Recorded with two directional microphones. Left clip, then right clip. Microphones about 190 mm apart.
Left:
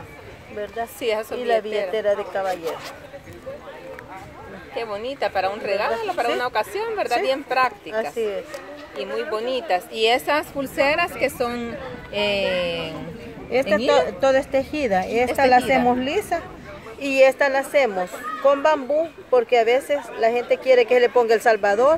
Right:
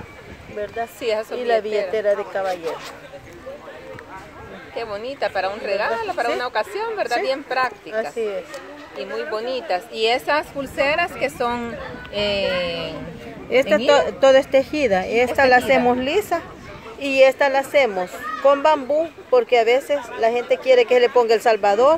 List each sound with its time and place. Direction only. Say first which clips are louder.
1.0 s speech: right 1 dB; 10° left (ahead or behind)
1.4 s a child's voice: right 2 dB; 15° right (ahead or behind)
2.4 s speech: right 1 dB; 10° left (ahead or behind)
4.7 s speech: even; 10° left (ahead or behind)
13.5 s a woman's voice: right 3 dB; 25° right (ahead or behind); by 21.9 s 5° right (ahead or behind)